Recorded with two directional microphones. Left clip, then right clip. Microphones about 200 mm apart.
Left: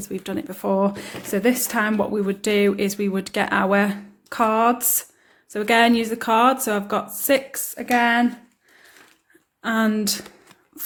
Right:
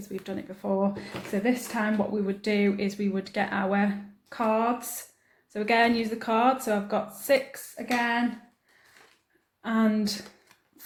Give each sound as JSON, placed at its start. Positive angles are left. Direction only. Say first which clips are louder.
{"t": 0.1, "sound": "speech", "louder": "left 7 dB", "side_deg": 45}
{"t": 9.6, "sound": "speech", "louder": "left 5 dB", "side_deg": 40}